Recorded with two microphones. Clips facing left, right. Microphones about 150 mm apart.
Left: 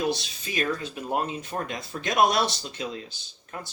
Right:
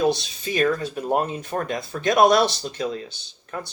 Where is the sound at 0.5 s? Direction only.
45° right (ahead or behind).